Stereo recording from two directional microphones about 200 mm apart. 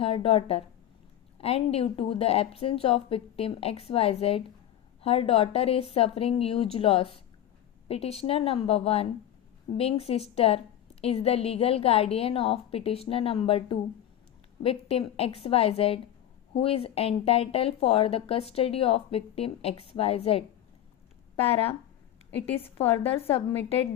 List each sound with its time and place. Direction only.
0.0 s speech: 30° left (ahead or behind)
21.4 s speech: 30° left (ahead or behind)